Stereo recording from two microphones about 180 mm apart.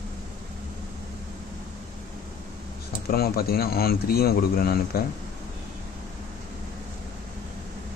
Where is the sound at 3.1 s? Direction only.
55° left (ahead or behind).